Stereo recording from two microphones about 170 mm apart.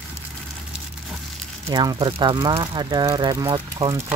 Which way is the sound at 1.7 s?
25° right (ahead or behind).